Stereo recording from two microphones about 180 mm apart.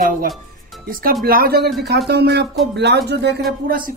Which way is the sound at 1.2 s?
55° right (ahead or behind).